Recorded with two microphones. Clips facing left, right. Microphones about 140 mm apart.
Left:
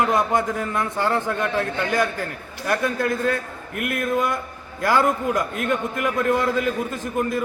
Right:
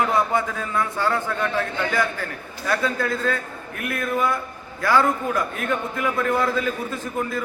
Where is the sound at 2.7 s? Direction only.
20° left (ahead or behind).